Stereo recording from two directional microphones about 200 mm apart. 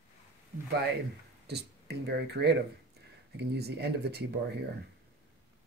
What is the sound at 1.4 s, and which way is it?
Speech, 55° right (ahead or behind).